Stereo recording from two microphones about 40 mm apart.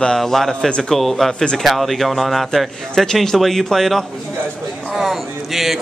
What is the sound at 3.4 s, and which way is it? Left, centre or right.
Speech, centre.